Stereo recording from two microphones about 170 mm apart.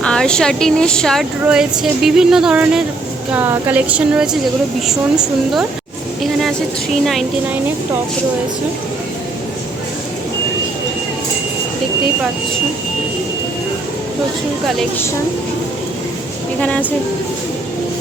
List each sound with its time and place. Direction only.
0.0 s a woman's voice: 5° left (ahead or behind)
7.0 s speech: centre (ahead or behind)
16.6 s a woman's voice: 5° left (ahead or behind)